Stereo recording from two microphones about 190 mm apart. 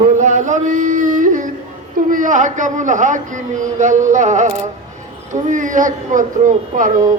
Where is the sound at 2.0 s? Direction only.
45° right (ahead or behind).